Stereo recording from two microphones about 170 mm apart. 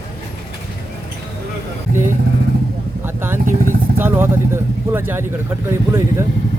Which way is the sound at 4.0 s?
15° right (ahead or behind).